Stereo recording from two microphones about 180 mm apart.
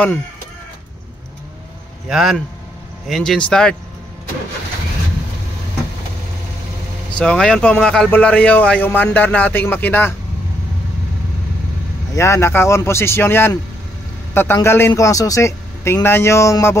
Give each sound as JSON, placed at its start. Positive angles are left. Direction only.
{"t": 2.0, "sound": "speech", "side_deg": 0}
{"t": 7.2, "sound": "speech", "side_deg": 5}
{"t": 12.2, "sound": "speech", "side_deg": 15}